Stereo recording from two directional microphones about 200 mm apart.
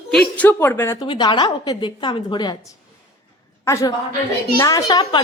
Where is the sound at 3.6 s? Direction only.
15° left (ahead or behind).